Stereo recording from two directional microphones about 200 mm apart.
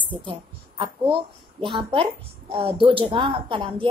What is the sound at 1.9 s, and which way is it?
A woman's voice, 30° right (ahead or behind).